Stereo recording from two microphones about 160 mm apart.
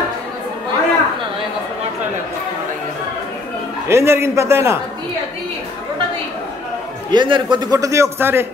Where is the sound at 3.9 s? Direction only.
15° right (ahead or behind).